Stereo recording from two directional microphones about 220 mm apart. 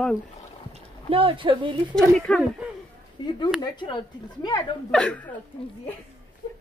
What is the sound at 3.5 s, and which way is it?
Speech, 20° left (ahead or behind).